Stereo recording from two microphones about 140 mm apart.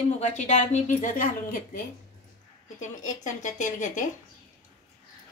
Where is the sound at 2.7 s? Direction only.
65° left (ahead or behind).